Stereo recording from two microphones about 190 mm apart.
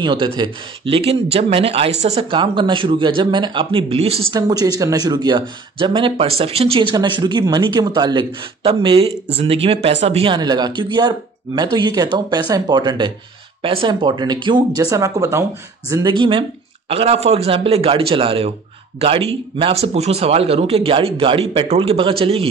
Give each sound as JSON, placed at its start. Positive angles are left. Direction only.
{"t": 0.0, "sound": "speech", "side_deg": -25}
{"t": 4.3, "sound": "speech", "side_deg": -20}